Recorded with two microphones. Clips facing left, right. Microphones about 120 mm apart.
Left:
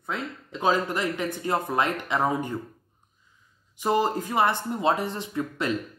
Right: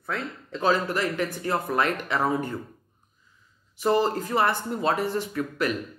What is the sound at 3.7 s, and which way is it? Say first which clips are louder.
Speech: right 1 dB; 15° left (ahead or behind).